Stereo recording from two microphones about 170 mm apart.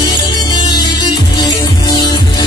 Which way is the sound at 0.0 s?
25° left (ahead or behind).